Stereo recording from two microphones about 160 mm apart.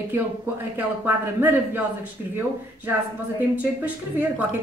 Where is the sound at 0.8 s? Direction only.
10° right (ahead or behind).